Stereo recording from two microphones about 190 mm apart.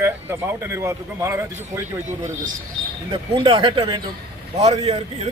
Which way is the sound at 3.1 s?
25° right (ahead or behind).